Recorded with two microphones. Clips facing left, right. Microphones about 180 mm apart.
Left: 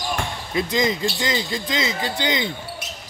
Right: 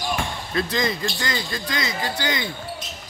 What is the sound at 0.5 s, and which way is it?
Speech, 15° left (ahead or behind).